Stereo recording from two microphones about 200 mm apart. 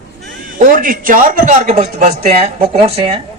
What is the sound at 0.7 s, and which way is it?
A man's voice, 45° right (ahead or behind).